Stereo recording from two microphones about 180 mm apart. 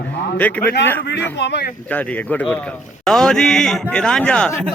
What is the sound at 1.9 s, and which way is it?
A man's voice, 5° left (ahead or behind).